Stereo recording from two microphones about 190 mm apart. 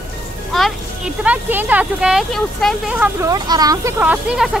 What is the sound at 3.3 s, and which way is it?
Speech, 20° right (ahead or behind).